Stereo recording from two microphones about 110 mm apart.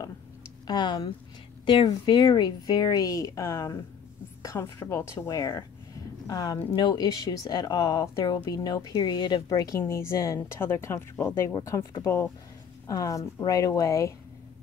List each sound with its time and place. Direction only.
0.7 s a woman's voice: 40° left (ahead or behind)